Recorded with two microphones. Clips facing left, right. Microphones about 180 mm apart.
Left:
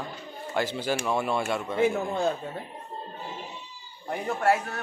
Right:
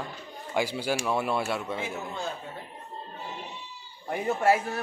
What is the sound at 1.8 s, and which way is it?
Speech, 50° left (ahead or behind).